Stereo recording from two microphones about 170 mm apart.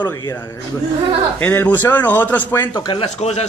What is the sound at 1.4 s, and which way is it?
Speech, 10° left (ahead or behind).